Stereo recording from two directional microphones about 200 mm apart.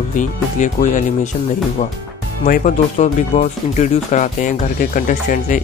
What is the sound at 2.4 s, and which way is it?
Speech, 40° left (ahead or behind).